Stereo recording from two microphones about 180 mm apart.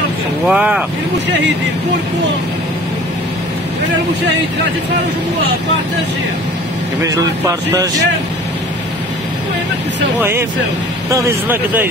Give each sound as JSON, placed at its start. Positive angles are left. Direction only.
{"t": 0.5, "sound": "speech", "side_deg": -5}
{"t": 7.0, "sound": "speech", "side_deg": -20}
{"t": 11.1, "sound": "speech", "side_deg": -15}